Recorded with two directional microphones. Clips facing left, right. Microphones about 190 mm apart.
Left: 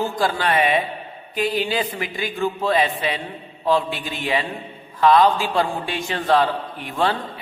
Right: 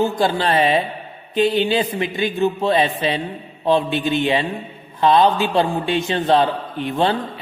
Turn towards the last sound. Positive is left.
turn(degrees=-25)  # may be behind; listen again after turning